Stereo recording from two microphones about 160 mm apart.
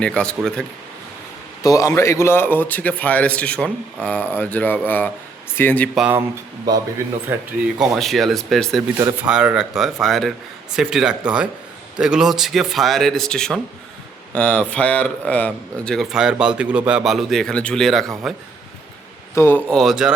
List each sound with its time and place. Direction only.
0.0 s speech: 5° left (ahead or behind)
1.6 s a man's voice: 20° left (ahead or behind)
6.0 s speech: 10° right (ahead or behind)
7.3 s speech: 15° right (ahead or behind)
7.8 s speech: centre (ahead or behind)
19.3 s speech: 15° left (ahead or behind); by 20.1 s 5° right (ahead or behind)